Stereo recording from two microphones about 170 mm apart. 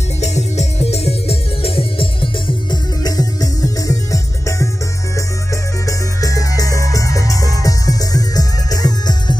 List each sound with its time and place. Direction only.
0.2 s music: 40° left (ahead or behind); by 9.4 s 25° left (ahead or behind)